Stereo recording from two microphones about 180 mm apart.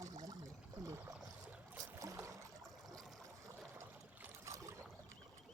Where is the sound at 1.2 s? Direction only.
5° right (ahead or behind).